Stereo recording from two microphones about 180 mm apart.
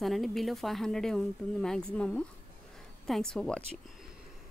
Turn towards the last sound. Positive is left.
turn(degrees=5)  # may be behind; listen again after turning